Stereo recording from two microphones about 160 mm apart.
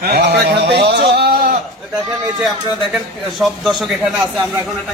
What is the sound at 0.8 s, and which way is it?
Sheep, 90° right.